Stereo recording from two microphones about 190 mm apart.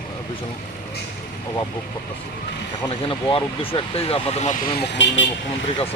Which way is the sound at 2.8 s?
25° left (ahead or behind).